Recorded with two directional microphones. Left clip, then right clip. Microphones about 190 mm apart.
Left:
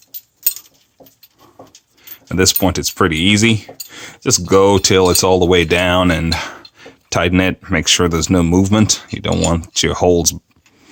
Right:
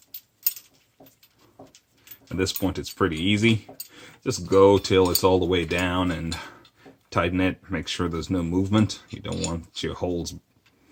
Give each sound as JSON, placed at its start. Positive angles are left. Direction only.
{"t": 2.3, "sound": "speech", "side_deg": 50}